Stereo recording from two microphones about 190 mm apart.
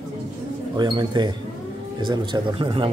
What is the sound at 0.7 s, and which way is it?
A man's voice, 25° right (ahead or behind).